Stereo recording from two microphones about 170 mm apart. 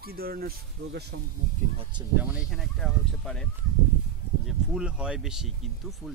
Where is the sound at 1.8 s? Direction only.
25° right (ahead or behind).